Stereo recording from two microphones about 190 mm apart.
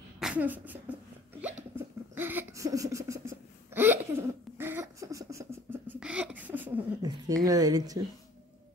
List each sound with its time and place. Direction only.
0.2 s a sound: 5° right (ahead or behind)
1.4 s hiccup: 10° right (ahead or behind)
7.0 s speech: 20° right (ahead or behind)